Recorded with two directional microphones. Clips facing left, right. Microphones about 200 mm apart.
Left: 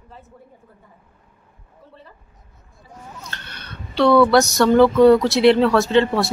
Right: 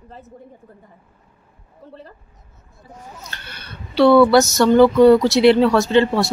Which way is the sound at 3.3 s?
5° right (ahead or behind).